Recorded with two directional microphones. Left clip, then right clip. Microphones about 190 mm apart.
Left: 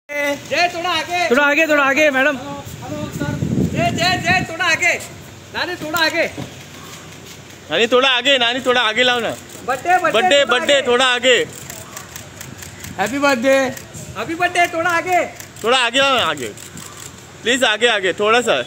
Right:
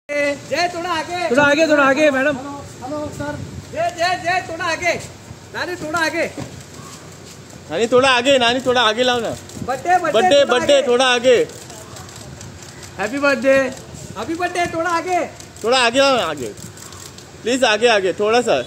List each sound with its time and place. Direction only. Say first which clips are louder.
0.1 s a sound: right 1 dB; 35° left (ahead or behind)
0.5 s speech: left 2 dB; 35° right (ahead or behind)
1.3 s a man's voice: right 1 dB; 30° left (ahead or behind)
4.0 s a man's voice: left 2 dB; 35° right (ahead or behind); by 6.3 s 15° right (ahead or behind)
7.7 s speech: even; centre (ahead or behind)
9.7 s speech: left 1 dB; 10° right (ahead or behind)
10.1 s speech: even; centre (ahead or behind)
12.9 s speech: left 1 dB; 65° left (ahead or behind)
14.1 s a man's voice: left 4 dB; 20° right (ahead or behind)
15.6 s speech: even; centre (ahead or behind)
17.5 s speech: even; centre (ahead or behind)